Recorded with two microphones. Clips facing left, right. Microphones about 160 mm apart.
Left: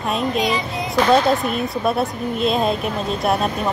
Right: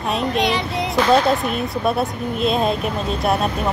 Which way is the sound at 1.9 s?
Centre (ahead or behind).